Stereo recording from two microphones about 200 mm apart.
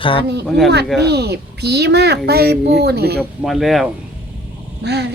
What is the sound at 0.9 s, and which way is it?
A child's voice, 55° right (ahead or behind).